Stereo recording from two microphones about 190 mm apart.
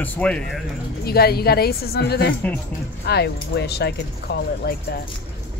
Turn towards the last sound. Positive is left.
turn(degrees=60)  # may be behind; listen again after turning